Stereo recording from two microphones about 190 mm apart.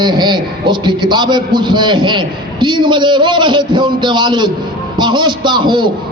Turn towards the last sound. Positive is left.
turn(degrees=-25)  # may be behind; listen again after turning